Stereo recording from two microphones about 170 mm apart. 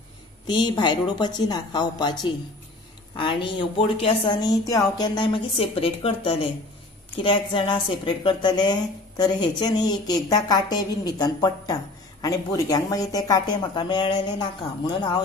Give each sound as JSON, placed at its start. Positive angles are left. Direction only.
{"t": 0.5, "sound": "speech", "side_deg": 25}
{"t": 3.5, "sound": "speech", "side_deg": 30}